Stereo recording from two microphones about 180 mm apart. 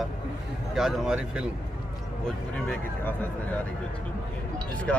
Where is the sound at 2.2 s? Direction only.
5° left (ahead or behind).